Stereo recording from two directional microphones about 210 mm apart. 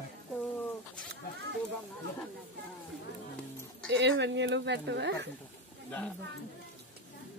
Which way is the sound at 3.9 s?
60° right (ahead or behind).